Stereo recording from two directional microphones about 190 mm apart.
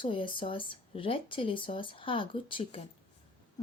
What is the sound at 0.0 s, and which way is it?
Speech, 25° left (ahead or behind).